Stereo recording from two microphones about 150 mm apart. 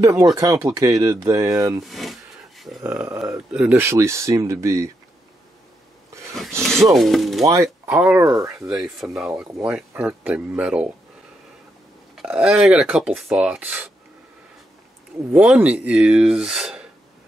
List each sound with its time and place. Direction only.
0.0 s speech: 20° right (ahead or behind)
1.9 s a sound: centre (ahead or behind)
2.8 s speech: 15° right (ahead or behind)
3.2 s speech: 5° right (ahead or behind)
6.6 s speech: centre (ahead or behind)
7.4 s speech: 20° right (ahead or behind)
7.9 s speech: 10° right (ahead or behind)
8.2 s speech: 20° right (ahead or behind)
8.6 s speech: centre (ahead or behind)
12.2 s speech: 5° right (ahead or behind)
15.3 s speech: 10° right (ahead or behind)